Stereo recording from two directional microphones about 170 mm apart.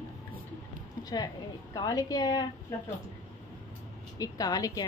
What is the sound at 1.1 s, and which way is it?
A woman's voice, 25° left (ahead or behind).